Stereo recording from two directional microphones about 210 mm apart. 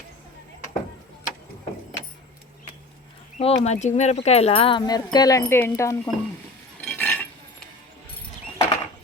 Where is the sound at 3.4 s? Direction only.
30° left (ahead or behind); by 6.1 s 15° left (ahead or behind).